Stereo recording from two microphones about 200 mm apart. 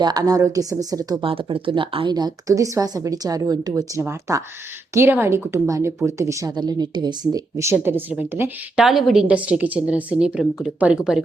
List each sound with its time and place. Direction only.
0.0 s a woman's voice: 20° right (ahead or behind); by 11.2 s 5° right (ahead or behind)